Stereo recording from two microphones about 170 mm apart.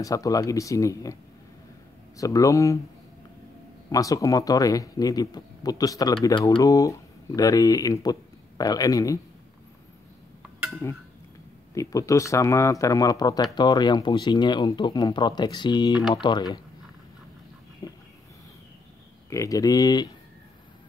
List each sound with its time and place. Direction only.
0.0 s speech: 20° left (ahead or behind)
2.1 s speech: 20° left (ahead or behind)
3.9 s speech: 20° left (ahead or behind)
10.8 s speech: 15° left (ahead or behind)
17.8 s a sound: 20° left (ahead or behind)
19.3 s speech: 20° left (ahead or behind)